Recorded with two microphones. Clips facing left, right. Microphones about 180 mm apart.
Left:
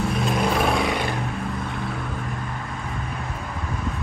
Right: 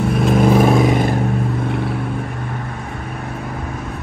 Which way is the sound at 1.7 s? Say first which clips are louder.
Right 8 dB; 65° right (ahead or behind).